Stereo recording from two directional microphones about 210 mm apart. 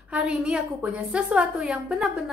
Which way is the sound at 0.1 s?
5° right (ahead or behind).